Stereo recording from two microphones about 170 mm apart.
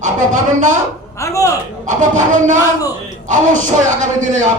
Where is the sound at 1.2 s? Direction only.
20° left (ahead or behind).